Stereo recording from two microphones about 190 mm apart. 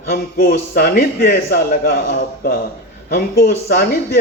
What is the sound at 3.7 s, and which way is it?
Speech, 55° left (ahead or behind).